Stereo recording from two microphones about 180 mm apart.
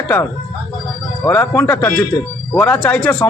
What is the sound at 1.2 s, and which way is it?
A man's voice, 10° left (ahead or behind).